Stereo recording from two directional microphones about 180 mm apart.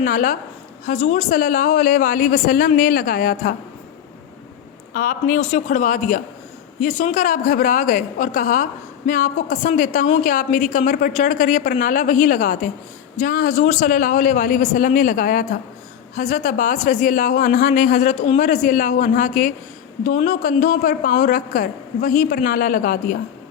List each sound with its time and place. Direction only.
0.0 s a woman's voice: 50° left (ahead or behind)
0.9 s a woman's voice: 40° left (ahead or behind)
4.9 s a woman's voice: 50° left (ahead or behind)
5.4 s a woman's voice: 40° left (ahead or behind)